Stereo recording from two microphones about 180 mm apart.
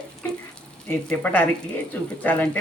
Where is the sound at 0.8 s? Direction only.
10° left (ahead or behind).